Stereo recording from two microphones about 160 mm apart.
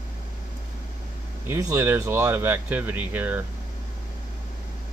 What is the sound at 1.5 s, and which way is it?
Speech, 20° right (ahead or behind).